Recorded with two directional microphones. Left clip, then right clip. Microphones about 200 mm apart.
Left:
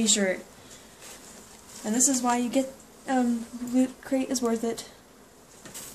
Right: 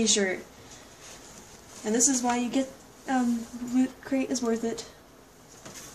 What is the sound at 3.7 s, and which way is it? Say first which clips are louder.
Speech: left 1 dB; 25° left (ahead or behind).